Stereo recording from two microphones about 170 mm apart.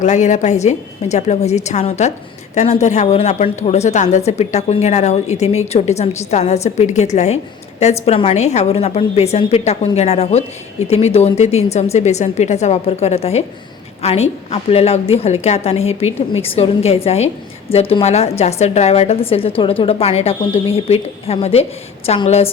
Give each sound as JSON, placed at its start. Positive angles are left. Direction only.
{"t": 0.0, "sound": "a woman's voice", "side_deg": 45}